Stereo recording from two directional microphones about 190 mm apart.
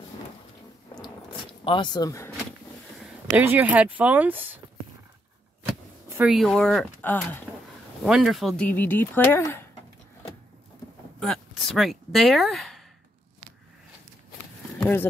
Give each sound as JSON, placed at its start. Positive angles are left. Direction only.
{"t": 1.6, "sound": "speech", "side_deg": 25}
{"t": 3.3, "sound": "speech", "side_deg": -10}
{"t": 6.0, "sound": "a sound", "side_deg": -15}
{"t": 6.3, "sound": "speech", "side_deg": 0}
{"t": 11.1, "sound": "speech", "side_deg": 0}
{"t": 14.8, "sound": "speech", "side_deg": 10}